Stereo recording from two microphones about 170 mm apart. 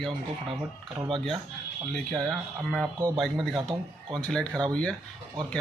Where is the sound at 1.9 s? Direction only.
Centre (ahead or behind).